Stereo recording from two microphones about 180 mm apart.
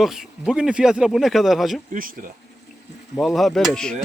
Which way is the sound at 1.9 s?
50° right (ahead or behind).